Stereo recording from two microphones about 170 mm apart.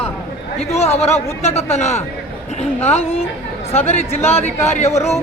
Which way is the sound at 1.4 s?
40° left (ahead or behind).